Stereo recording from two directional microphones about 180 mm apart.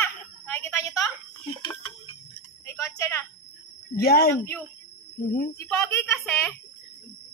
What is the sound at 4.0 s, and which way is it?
Speech, 60° left (ahead or behind).